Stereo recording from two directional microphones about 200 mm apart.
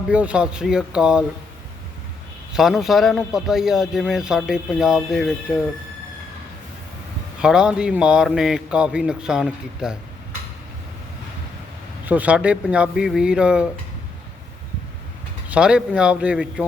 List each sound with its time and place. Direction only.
0.1 s a man's voice: 5° right (ahead or behind)
2.5 s a man's voice: centre (ahead or behind)
7.4 s a man's voice: 5° right (ahead or behind)
12.0 s a man's voice: 10° right (ahead or behind)
15.4 s a man's voice: 5° right (ahead or behind)